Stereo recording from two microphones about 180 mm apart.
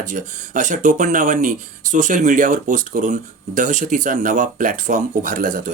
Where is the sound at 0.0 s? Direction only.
45° right (ahead or behind).